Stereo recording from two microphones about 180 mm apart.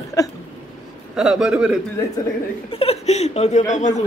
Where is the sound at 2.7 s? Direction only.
35° left (ahead or behind).